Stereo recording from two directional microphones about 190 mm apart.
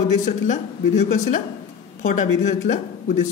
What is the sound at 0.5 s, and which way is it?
A man's voice, 40° left (ahead or behind).